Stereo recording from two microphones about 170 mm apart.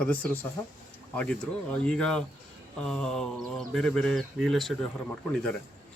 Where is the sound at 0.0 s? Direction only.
10° left (ahead or behind).